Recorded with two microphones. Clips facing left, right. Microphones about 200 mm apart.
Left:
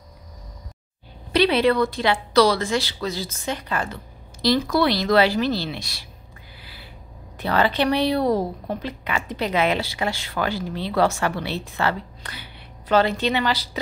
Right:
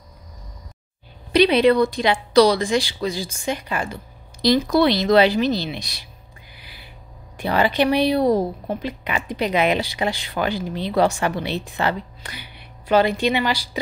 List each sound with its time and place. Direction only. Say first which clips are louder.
1.3 s a woman's voice: right 3 dB; 15° right (ahead or behind)
6.5 s a sound: left 1 dB; 15° right (ahead or behind)
7.3 s a woman's voice: right 2 dB; 15° right (ahead or behind)